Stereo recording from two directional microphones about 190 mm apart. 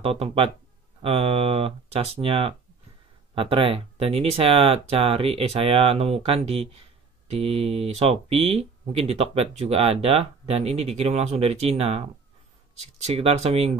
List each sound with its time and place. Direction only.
0.0 s speech: 30° right (ahead or behind)